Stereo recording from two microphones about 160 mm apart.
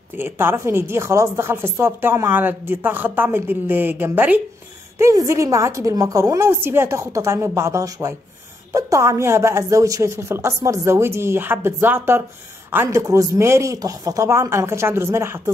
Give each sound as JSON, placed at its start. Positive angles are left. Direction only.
{"t": 0.1, "sound": "a woman's voice", "side_deg": -15}